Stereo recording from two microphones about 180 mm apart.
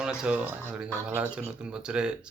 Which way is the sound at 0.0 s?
5° right (ahead or behind).